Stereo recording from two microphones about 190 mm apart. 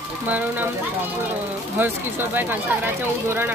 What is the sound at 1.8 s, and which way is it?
Speech, 10° right (ahead or behind).